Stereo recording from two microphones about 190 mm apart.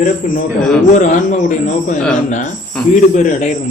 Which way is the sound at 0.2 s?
45° left (ahead or behind).